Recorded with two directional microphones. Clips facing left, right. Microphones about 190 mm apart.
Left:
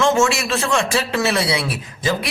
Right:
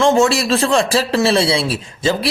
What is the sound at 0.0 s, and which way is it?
A man's voice, 35° right (ahead or behind).